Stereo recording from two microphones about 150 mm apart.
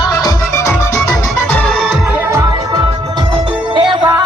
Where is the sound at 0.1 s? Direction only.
25° left (ahead or behind).